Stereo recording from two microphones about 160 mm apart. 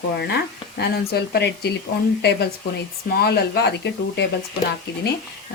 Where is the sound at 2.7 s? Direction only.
75° left (ahead or behind).